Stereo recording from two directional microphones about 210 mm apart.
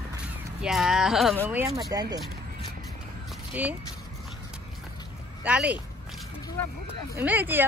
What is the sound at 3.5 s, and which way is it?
Speech, 5° right (ahead or behind).